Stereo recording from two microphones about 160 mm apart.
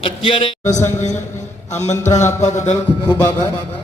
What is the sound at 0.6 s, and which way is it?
Mantra, 45° left (ahead or behind).